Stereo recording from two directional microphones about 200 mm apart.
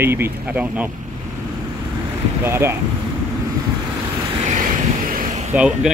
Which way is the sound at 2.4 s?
10° right (ahead or behind).